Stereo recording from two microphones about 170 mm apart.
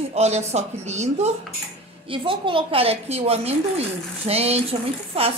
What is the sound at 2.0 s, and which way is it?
A woman's voice, 30° right (ahead or behind).